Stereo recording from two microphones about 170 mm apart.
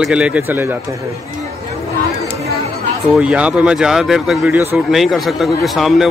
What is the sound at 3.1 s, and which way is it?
Speech, 5° right (ahead or behind).